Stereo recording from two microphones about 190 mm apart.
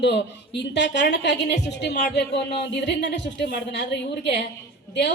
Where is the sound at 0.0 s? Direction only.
65° left (ahead or behind).